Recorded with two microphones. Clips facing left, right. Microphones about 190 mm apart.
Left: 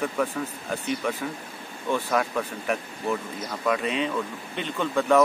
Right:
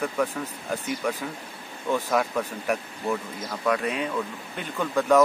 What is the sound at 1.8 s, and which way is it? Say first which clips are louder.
Speech: right 1 dB; 15° right (ahead or behind).